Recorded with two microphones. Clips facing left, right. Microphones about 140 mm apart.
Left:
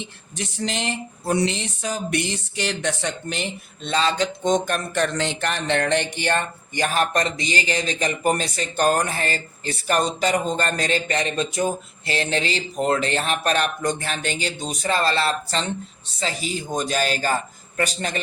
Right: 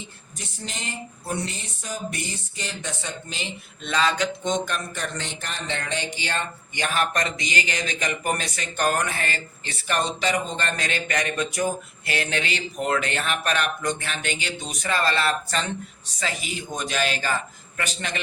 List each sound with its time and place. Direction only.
0.0 s a sound: 80° left; by 3.5 s 60° left (ahead or behind)
3.8 s speech: 30° left (ahead or behind)
4.9 s speech: 90° left; by 18.2 s 35° left (ahead or behind)